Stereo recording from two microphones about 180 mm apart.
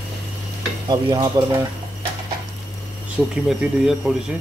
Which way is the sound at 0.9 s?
20° right (ahead or behind).